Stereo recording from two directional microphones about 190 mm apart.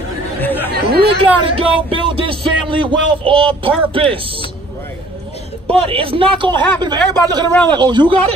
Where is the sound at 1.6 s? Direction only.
30° right (ahead or behind).